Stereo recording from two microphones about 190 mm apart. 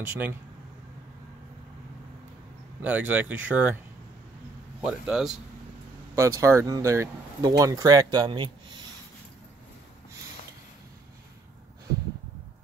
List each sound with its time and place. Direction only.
0.1 s speech: 10° right (ahead or behind)
2.8 s speech: 10° right (ahead or behind)
4.8 s a man's voice: 5° right (ahead or behind)
6.1 s speech: 15° right (ahead or behind)